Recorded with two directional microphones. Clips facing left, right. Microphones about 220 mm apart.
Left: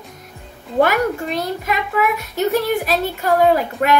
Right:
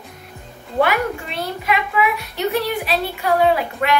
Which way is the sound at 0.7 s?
40° left (ahead or behind).